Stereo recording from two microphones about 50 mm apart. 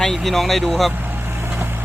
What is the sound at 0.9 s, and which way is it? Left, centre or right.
Vehicle, right.